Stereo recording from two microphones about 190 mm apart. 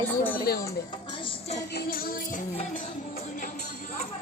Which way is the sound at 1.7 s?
50° left (ahead or behind).